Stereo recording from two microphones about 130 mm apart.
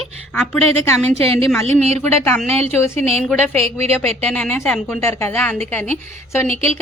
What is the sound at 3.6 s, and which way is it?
Speech, 55° right (ahead or behind).